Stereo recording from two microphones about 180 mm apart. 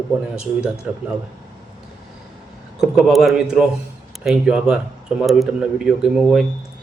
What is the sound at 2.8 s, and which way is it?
Speech, 5° right (ahead or behind).